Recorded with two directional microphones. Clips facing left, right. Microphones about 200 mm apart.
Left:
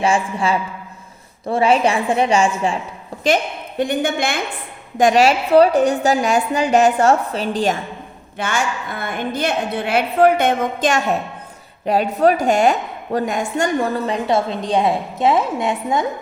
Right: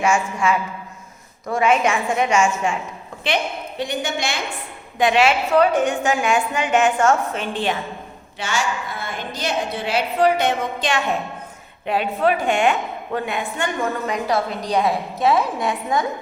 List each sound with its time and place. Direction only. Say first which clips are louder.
0.0 s a woman's voice: left 1 dB; 30° left (ahead or behind)
3.2 s a woman's voice: left 5 dB; 45° left (ahead or behind)
4.9 s a woman's voice: left 3 dB; 40° left (ahead or behind)
8.4 s a woman's voice: left 2 dB; 55° left (ahead or behind); by 16.0 s 25° left (ahead or behind)